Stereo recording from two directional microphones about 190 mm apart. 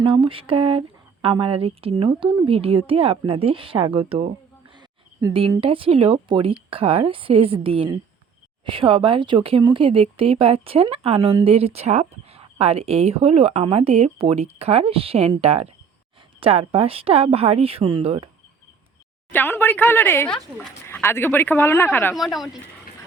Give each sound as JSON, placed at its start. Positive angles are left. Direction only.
{"t": 0.0, "sound": "speech", "side_deg": -25}
{"t": 19.3, "sound": "speech", "side_deg": 10}
{"t": 22.1, "sound": "speech", "side_deg": 0}